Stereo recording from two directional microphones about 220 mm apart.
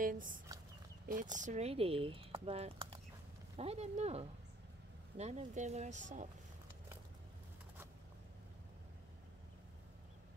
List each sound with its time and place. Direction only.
0.0 s speech: 40° right (ahead or behind)